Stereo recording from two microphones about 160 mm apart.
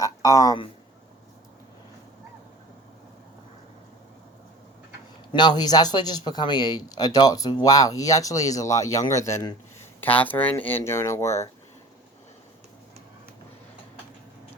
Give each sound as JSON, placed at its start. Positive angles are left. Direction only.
{"t": 0.0, "sound": "speech", "side_deg": 20}
{"t": 5.3, "sound": "speech", "side_deg": 25}